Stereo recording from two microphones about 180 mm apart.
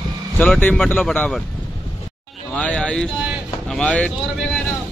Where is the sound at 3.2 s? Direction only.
5° right (ahead or behind).